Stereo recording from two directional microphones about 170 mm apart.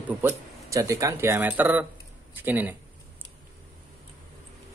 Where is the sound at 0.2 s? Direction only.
15° right (ahead or behind).